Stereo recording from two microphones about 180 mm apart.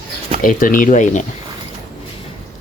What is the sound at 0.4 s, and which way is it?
Speech, 50° left (ahead or behind).